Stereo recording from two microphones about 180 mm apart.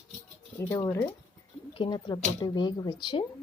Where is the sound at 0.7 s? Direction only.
15° left (ahead or behind).